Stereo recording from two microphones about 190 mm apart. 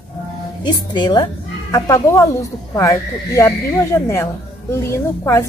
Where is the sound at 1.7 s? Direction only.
15° left (ahead or behind).